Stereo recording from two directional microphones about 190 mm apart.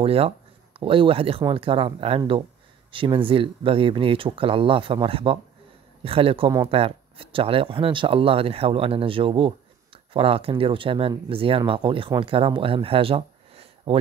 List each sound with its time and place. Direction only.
0.0 s speech: 30° right (ahead or behind)